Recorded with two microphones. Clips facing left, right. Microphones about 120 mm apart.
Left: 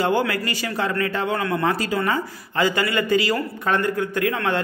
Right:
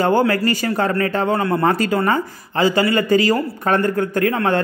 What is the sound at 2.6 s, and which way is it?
Speech, 30° right (ahead or behind).